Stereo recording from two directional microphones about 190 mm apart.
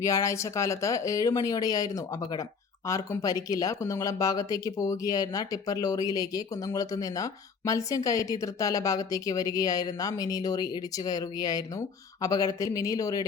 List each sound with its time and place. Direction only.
0.0 s speech: 15° left (ahead or behind)